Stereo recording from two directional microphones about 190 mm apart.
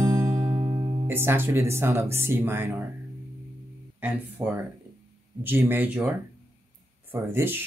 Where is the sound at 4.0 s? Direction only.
10° right (ahead or behind).